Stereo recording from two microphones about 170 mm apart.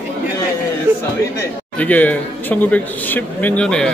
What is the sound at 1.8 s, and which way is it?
Speech, 10° left (ahead or behind).